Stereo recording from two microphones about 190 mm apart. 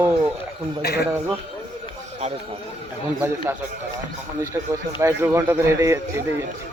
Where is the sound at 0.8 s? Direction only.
55° left (ahead or behind).